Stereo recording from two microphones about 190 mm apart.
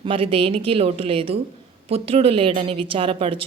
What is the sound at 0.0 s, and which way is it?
A woman's voice, 30° right (ahead or behind).